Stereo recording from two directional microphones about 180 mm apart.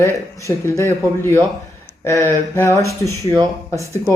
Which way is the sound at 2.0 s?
15° left (ahead or behind).